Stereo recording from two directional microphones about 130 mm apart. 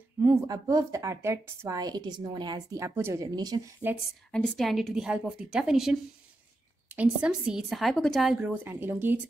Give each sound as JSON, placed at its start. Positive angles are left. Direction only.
{"t": 0.2, "sound": "a woman's voice", "side_deg": -25}
{"t": 3.3, "sound": "speech", "side_deg": -30}
{"t": 3.8, "sound": "speech", "side_deg": -15}
{"t": 4.3, "sound": "a woman's voice", "side_deg": 5}